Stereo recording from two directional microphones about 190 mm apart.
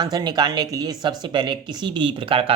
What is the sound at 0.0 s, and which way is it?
Speech, 20° right (ahead or behind).